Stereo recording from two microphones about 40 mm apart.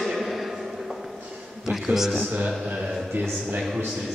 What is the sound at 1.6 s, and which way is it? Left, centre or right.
Speech, centre.